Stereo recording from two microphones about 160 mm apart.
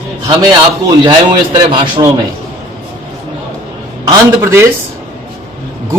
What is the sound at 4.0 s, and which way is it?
Speech, 20° right (ahead or behind).